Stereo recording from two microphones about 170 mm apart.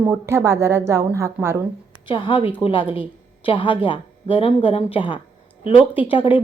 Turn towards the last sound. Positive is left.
turn(degrees=30)  # may be behind; listen again after turning